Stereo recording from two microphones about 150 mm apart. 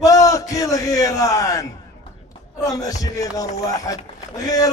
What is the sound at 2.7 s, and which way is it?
A man's voice, 25° left (ahead or behind).